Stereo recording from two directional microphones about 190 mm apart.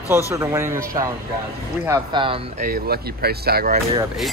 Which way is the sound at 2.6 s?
55° right (ahead or behind).